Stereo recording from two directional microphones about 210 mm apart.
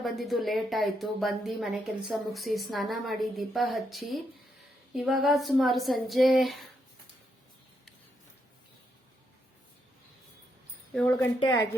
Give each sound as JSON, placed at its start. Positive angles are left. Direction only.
{"t": 0.0, "sound": "a woman's voice", "side_deg": 0}
{"t": 11.3, "sound": "speech", "side_deg": 20}